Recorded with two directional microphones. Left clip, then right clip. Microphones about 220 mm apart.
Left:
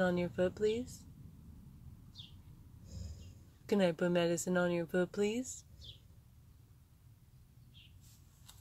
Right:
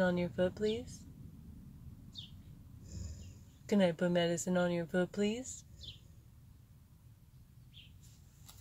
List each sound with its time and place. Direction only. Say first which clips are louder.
0.0 s speech: even; 15° left (ahead or behind)
3.6 s speech: even; 20° left (ahead or behind)